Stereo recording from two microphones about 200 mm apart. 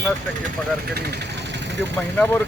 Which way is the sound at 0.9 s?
50° right (ahead or behind).